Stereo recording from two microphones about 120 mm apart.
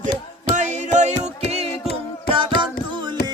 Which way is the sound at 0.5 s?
90° right.